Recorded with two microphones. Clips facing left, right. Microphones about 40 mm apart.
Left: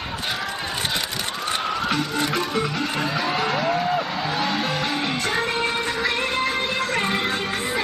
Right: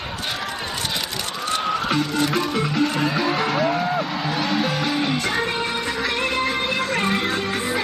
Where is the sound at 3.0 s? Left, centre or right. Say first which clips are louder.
Right 2 dB; centre.